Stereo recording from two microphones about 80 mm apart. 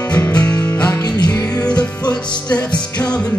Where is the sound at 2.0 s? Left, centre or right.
Left.